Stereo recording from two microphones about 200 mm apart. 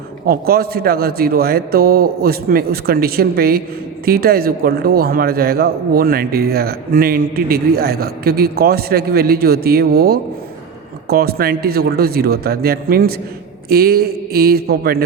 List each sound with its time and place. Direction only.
0.3 s a man's voice: 50° right (ahead or behind)